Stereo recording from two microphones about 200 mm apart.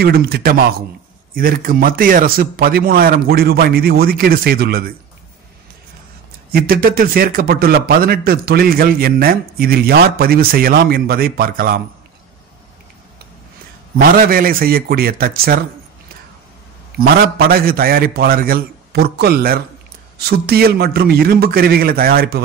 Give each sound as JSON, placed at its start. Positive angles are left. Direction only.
{"t": 0.0, "sound": "a man's voice", "side_deg": -50}
{"t": 6.5, "sound": "a man's voice", "side_deg": -50}
{"t": 13.9, "sound": "a man's voice", "side_deg": -45}
{"t": 17.0, "sound": "a man's voice", "side_deg": -50}